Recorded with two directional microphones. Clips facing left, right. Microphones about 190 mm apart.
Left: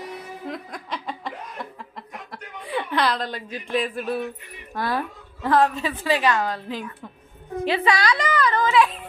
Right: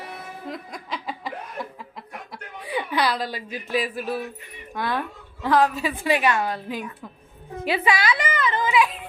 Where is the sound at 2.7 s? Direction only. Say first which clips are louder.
Left 1 dB; 5° right (ahead or behind).